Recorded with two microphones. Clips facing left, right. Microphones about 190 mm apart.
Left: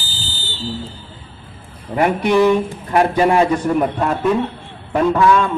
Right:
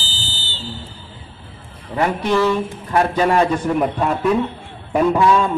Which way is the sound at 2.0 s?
15° left (ahead or behind).